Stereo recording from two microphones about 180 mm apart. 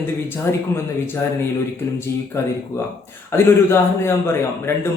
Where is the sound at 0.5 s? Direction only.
15° left (ahead or behind).